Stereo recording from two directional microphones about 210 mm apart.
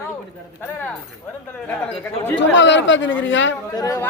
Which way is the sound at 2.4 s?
60° left (ahead or behind).